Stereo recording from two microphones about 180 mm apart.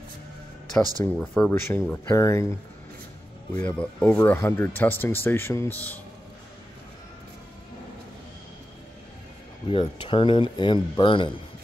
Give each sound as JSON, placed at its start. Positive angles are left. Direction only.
{"t": 0.7, "sound": "speech", "side_deg": 5}
{"t": 3.5, "sound": "speech", "side_deg": 10}
{"t": 9.7, "sound": "speech", "side_deg": 30}